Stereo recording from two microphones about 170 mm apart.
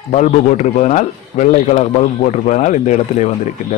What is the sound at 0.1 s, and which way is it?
A man's voice, 45° left (ahead or behind).